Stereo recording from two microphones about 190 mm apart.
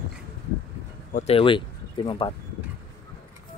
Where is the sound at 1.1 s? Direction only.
35° left (ahead or behind).